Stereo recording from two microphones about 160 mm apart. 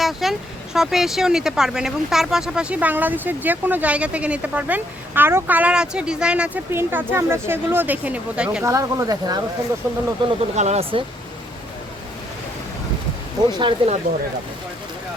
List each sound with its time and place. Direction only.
0.0 s speech: centre (ahead or behind)
10.2 s speech: 45° right (ahead or behind)
13.5 s speech: 30° right (ahead or behind)